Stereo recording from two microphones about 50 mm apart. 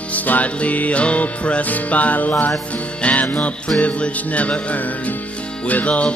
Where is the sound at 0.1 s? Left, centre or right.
Left.